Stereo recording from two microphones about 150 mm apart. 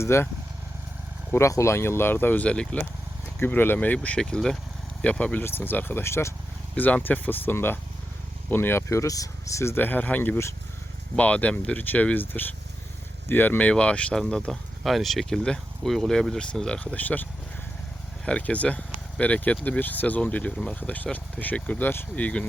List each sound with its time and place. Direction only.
0.0 s speech: 15° left (ahead or behind)
1.3 s speech: 20° left (ahead or behind)
18.3 s speech: 10° left (ahead or behind)